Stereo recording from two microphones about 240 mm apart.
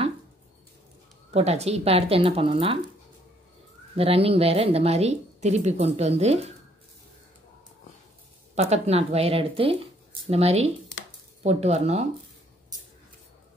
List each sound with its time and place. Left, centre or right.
1.3 s speech: right
3.9 s speech: right
8.5 s speech: right